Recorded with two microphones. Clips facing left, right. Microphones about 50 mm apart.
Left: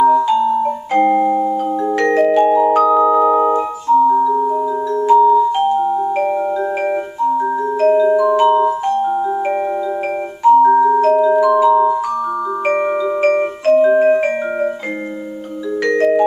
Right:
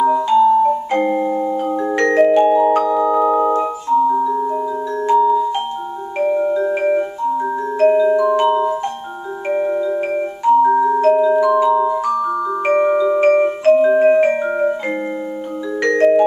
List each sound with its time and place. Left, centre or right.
0.0 s music: centre
2.1 s music: centre
3.0 s music: centre
5.0 s music: centre
7.8 s music: centre
10.4 s music: centre
10.7 s music: centre
11.0 s music: centre
12.9 s marimba: centre
13.2 s music: centre
16.0 s music: centre